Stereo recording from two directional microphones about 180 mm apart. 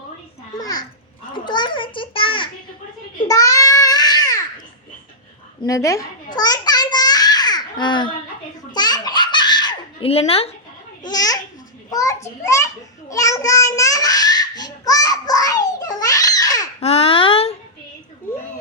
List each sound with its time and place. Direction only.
0.5 s babbling: 20° left (ahead or behind)
1.3 s a child's voice: 25° left (ahead or behind)
3.2 s babbling: 20° left (ahead or behind)
5.6 s a child's voice: 20° left (ahead or behind)
6.3 s babbling: 20° left (ahead or behind)
8.7 s baby laughter: 20° left (ahead or behind)
11.0 s babbling: 20° left (ahead or behind)
11.9 s a child's voice: 20° left (ahead or behind)
13.1 s babbling: 20° left (ahead or behind)
16.8 s a sound: 35° left (ahead or behind)